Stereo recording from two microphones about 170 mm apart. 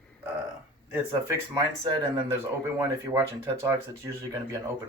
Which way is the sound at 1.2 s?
25° right (ahead or behind).